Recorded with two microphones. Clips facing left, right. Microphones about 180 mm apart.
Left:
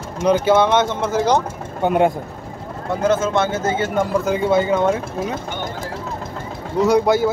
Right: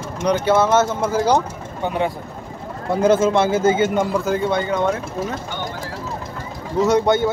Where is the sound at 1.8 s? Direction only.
50° left (ahead or behind).